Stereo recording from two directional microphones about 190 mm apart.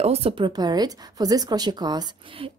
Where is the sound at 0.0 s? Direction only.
30° right (ahead or behind).